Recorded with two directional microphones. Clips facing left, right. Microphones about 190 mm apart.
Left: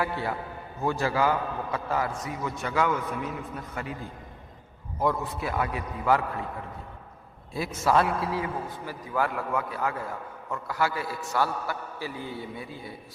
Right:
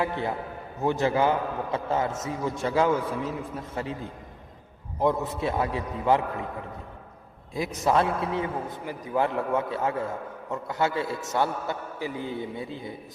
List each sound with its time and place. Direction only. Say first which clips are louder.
0.0 s a man's voice: right 2 dB; 20° right (ahead or behind)
5.2 s a man's voice: right 3 dB; 25° right (ahead or behind)
7.5 s a man's voice: even; 15° right (ahead or behind)